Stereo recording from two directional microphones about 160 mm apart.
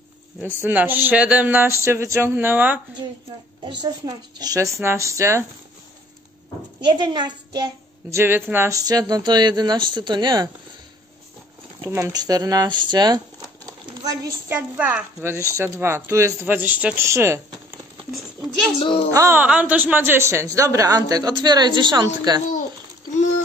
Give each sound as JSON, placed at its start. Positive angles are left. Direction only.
{"t": 0.7, "sound": "speech", "side_deg": -10}
{"t": 3.6, "sound": "a woman's voice", "side_deg": -25}
{"t": 6.8, "sound": "a woman's voice", "side_deg": -30}
{"t": 11.8, "sound": "speech", "side_deg": -15}
{"t": 14.8, "sound": "speech", "side_deg": -10}
{"t": 18.8, "sound": "a child's voice", "side_deg": 35}
{"t": 19.0, "sound": "a woman's voice", "side_deg": -20}